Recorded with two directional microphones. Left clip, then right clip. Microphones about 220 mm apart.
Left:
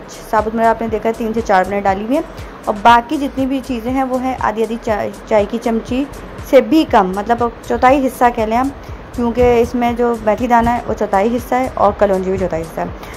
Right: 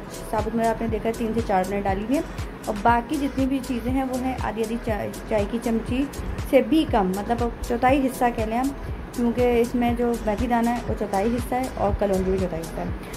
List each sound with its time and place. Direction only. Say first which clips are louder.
0.3 s a woman's voice: left 10 dB; 20° left (ahead or behind)